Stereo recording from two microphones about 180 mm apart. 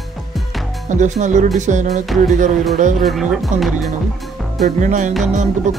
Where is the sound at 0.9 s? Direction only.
45° right (ahead or behind).